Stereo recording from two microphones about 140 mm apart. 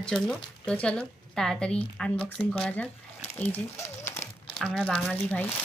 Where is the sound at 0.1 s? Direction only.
5° left (ahead or behind).